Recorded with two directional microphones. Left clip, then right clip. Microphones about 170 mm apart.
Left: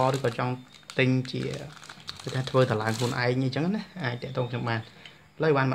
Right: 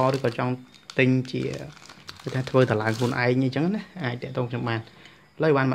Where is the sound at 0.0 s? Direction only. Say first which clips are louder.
Right 2 dB; 30° right (ahead or behind).